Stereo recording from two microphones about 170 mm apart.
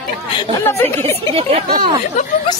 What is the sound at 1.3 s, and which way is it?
Speech, 35° right (ahead or behind).